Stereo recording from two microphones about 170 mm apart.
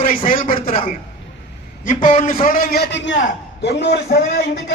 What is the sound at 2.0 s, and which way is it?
A man's voice, 50° left (ahead or behind).